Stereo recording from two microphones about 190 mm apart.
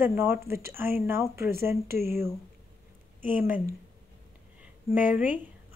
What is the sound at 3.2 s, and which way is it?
Speech, 10° right (ahead or behind).